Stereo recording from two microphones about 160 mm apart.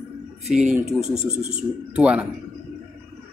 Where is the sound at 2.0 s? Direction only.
5° right (ahead or behind).